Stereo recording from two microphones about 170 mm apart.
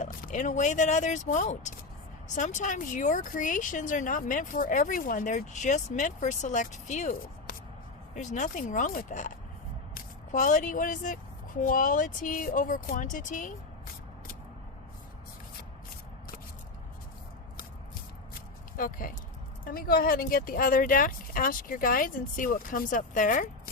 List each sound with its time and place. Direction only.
0.0 s speech: 45° left (ahead or behind)
18.8 s speech: 55° left (ahead or behind)